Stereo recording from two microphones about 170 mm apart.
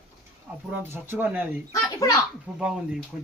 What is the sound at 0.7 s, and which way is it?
Speech, 10° right (ahead or behind).